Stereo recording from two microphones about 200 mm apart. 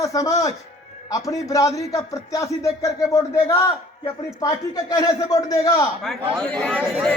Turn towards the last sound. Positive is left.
turn(degrees=-5)  # may be behind; listen again after turning